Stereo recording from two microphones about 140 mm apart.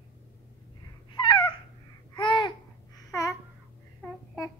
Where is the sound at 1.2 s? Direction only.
35° left (ahead or behind).